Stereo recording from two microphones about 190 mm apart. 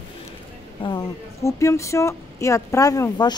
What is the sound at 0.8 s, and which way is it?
Speech, 20° left (ahead or behind).